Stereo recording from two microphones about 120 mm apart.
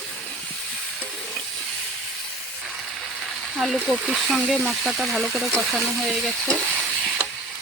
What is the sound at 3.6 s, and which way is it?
Speech, 5° right (ahead or behind).